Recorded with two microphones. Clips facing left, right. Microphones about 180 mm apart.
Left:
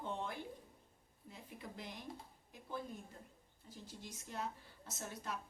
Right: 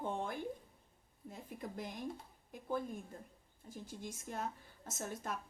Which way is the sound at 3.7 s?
50° right (ahead or behind).